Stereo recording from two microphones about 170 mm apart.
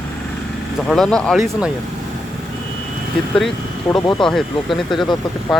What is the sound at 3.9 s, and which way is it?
Speech, 25° left (ahead or behind).